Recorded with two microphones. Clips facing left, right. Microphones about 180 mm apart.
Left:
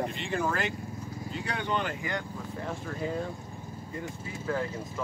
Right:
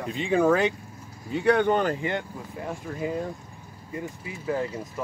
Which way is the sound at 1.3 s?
60° right (ahead or behind).